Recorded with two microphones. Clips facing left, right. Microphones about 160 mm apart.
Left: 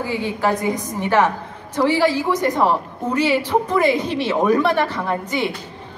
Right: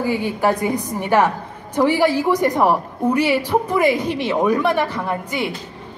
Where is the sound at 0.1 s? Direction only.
15° right (ahead or behind).